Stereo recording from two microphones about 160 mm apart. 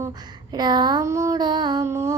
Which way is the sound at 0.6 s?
25° right (ahead or behind).